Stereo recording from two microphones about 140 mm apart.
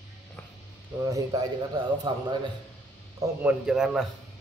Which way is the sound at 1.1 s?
25° right (ahead or behind).